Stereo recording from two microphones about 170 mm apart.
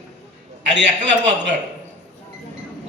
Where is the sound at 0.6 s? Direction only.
90° right.